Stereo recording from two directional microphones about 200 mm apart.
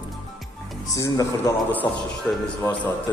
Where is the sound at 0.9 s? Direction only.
15° left (ahead or behind).